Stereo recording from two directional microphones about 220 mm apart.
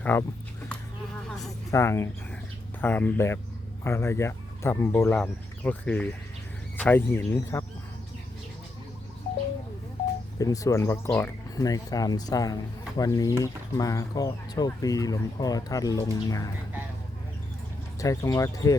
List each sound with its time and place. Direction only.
0.0 s speech: 10° left (ahead or behind)
1.7 s speech: 10° left (ahead or behind)
10.3 s speech: 15° left (ahead or behind)
18.0 s speech: 15° left (ahead or behind)